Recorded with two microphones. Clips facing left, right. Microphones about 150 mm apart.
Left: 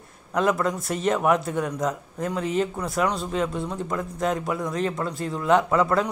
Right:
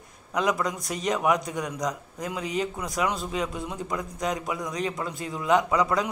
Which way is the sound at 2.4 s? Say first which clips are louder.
Left 4 dB; 45° left (ahead or behind).